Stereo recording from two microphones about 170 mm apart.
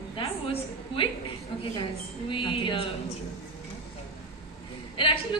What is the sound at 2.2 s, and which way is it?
Speech, 30° left (ahead or behind).